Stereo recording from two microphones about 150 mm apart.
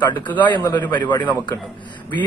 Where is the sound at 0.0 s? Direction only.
30° left (ahead or behind).